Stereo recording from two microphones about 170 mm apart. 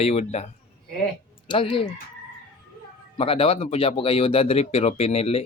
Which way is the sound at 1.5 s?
30° left (ahead or behind).